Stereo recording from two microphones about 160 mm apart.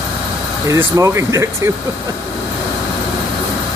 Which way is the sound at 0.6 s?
20° right (ahead or behind).